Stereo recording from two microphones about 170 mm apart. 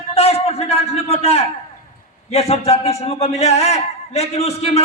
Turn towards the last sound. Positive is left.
turn(degrees=35)  # may be behind; listen again after turning